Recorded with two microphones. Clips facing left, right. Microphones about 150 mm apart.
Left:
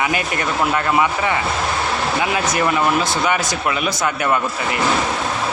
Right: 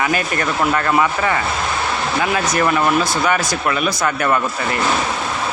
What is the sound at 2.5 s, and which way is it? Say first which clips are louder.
A man's voice: right 2 dB; 20° left (ahead or behind).